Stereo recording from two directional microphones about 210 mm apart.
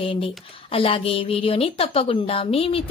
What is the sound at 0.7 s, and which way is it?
A woman's voice, 25° left (ahead or behind).